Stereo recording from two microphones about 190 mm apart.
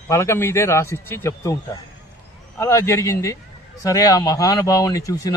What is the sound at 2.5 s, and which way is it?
A man's voice, 15° left (ahead or behind).